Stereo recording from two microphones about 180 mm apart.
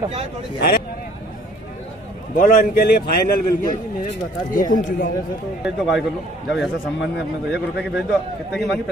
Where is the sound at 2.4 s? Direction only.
50° left (ahead or behind).